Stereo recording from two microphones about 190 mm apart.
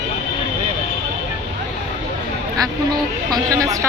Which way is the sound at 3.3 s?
15° right (ahead or behind).